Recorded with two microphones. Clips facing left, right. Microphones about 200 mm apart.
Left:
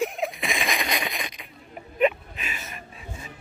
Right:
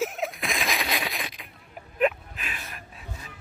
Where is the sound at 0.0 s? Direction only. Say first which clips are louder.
Left 2 dB; centre (ahead or behind).